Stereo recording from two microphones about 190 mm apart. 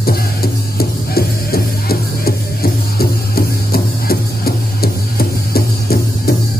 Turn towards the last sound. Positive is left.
turn(degrees=55)  # may be behind; listen again after turning